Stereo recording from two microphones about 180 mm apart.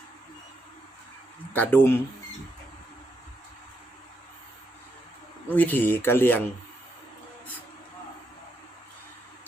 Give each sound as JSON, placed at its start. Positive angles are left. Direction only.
{"t": 1.5, "sound": "speech", "side_deg": 10}
{"t": 5.5, "sound": "speech", "side_deg": 10}